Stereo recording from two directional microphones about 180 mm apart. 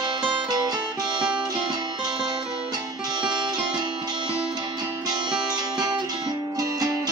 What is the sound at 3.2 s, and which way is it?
Music, 25° right (ahead or behind).